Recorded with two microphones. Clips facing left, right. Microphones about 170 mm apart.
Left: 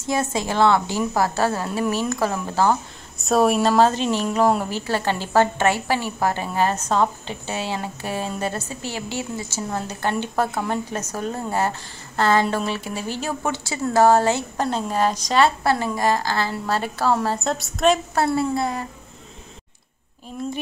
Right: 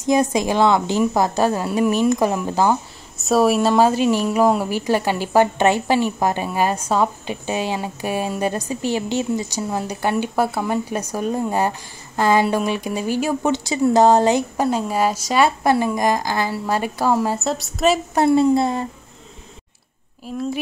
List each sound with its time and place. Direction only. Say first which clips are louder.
0.0 s a woman's voice: right 6 dB; 15° right (ahead or behind)
3.2 s a woman's voice: right 2 dB; centre (ahead or behind)
18.1 s a woman's voice: right 6 dB; 20° right (ahead or behind)